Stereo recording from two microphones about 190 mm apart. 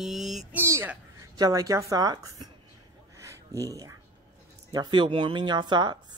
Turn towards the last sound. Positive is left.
turn(degrees=-25)  # may be behind; listen again after turning